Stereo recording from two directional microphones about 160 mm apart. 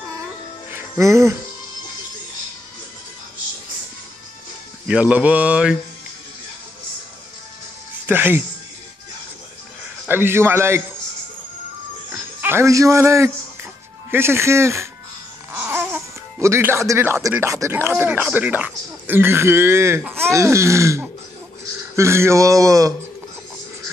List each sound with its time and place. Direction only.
0.7 s music: 15° right (ahead or behind)
4.8 s speech: 5° right (ahead or behind)
8.1 s speech: 10° right (ahead or behind)
10.0 s speech: 15° right (ahead or behind)
12.4 s speech: 15° right (ahead or behind)